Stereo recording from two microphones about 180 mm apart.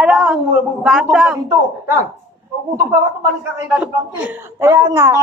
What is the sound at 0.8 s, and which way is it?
Speech, centre (ahead or behind).